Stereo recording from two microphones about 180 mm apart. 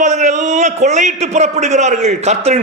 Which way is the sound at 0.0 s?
40° right (ahead or behind).